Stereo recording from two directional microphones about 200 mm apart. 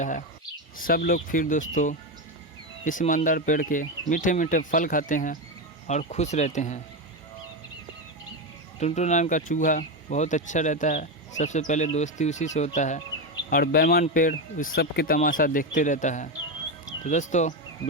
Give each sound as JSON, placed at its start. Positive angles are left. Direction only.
{"t": 0.8, "sound": "speech", "side_deg": 45}
{"t": 8.8, "sound": "speech", "side_deg": 35}